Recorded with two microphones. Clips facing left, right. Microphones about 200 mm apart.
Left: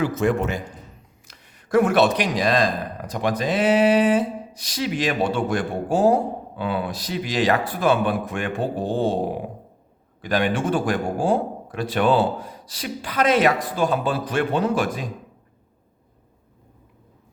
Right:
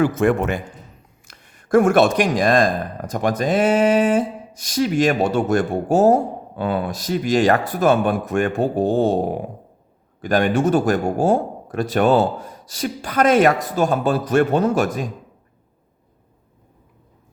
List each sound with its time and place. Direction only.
0.0 s a man's voice: 55° right (ahead or behind)